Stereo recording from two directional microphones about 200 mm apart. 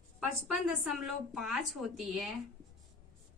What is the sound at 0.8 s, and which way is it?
A woman's voice, centre (ahead or behind).